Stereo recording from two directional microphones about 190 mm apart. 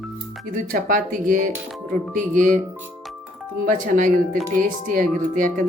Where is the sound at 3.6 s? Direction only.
45° right (ahead or behind).